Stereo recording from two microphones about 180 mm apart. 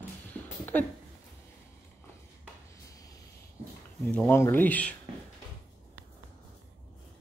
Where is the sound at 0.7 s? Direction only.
10° left (ahead or behind).